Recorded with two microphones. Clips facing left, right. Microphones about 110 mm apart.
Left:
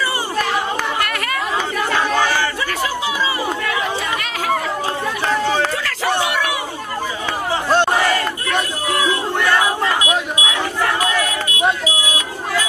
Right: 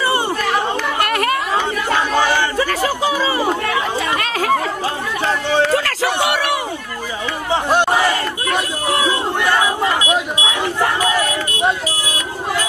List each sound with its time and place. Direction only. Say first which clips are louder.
1.0 s chatter: right 5 dB; 30° right (ahead or behind)
2.0 s battle cry: right 1 dB; 20° right (ahead or behind)
2.6 s chatter: right 4 dB; 45° right (ahead or behind)
6.2 s a sound: right 2 dB; 70° right (ahead or behind)
7.5 s chatter: right 1 dB; 15° right (ahead or behind)
8.9 s battle cry: even; 20° right (ahead or behind)
10.3 s crowd: right 1 dB; 25° right (ahead or behind)